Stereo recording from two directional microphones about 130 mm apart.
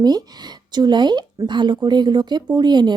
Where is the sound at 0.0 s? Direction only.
30° right (ahead or behind).